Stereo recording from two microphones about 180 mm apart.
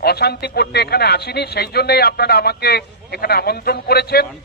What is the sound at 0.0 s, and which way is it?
A man's voice, 60° left (ahead or behind).